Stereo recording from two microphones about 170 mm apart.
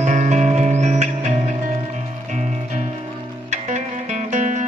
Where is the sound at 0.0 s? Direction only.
45° right (ahead or behind).